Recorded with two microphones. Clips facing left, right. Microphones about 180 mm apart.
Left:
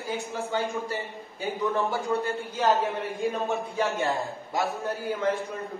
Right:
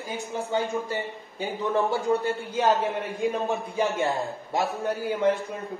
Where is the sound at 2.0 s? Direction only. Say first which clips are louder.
Right 3 dB; 15° right (ahead or behind).